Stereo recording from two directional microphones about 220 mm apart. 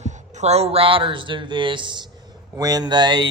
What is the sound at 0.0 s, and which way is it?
Speech, 30° right (ahead or behind).